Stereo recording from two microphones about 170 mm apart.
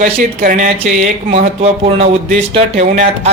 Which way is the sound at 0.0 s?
55° right (ahead or behind).